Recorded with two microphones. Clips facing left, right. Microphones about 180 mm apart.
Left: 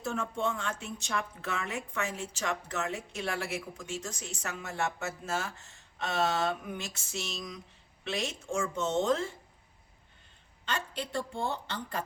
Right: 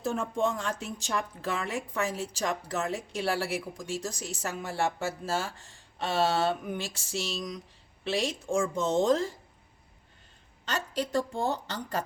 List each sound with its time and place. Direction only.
0.0 s a woman's voice: 35° right (ahead or behind)
10.7 s a woman's voice: 40° right (ahead or behind)